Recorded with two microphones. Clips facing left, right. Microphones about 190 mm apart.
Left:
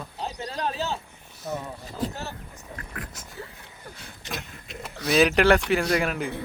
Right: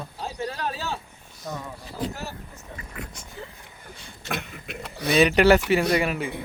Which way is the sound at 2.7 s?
Centre (ahead or behind).